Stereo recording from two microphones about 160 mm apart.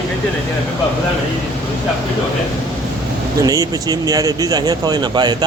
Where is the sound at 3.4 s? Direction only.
20° right (ahead or behind).